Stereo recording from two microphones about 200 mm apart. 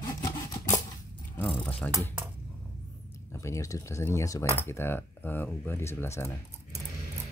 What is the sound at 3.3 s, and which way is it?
Speech, 15° left (ahead or behind).